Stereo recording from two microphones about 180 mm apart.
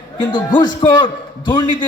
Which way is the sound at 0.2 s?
25° left (ahead or behind).